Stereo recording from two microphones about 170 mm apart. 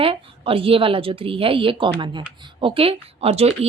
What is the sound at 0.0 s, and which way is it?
Speech, 35° right (ahead or behind).